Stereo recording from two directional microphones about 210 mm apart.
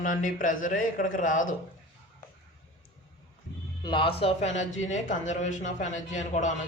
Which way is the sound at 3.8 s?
20° left (ahead or behind).